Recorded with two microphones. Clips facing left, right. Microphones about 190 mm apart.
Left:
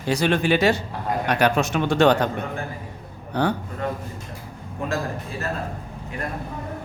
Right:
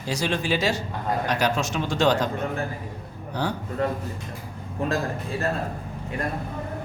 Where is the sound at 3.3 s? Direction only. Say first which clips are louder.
Left 5 dB; 60° left (ahead or behind).